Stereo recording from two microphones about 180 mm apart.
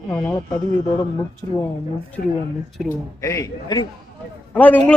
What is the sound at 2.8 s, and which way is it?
Speech, 5° right (ahead or behind).